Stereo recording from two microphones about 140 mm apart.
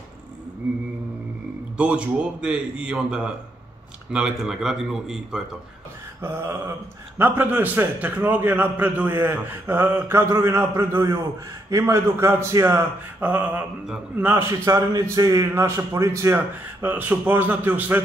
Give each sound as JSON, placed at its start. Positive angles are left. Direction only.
{"t": 1.8, "sound": "a man's voice", "side_deg": -10}
{"t": 6.2, "sound": "a man's voice", "side_deg": -15}